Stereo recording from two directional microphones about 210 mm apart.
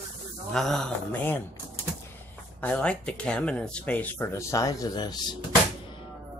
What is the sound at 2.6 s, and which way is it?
Speech, 5° left (ahead or behind).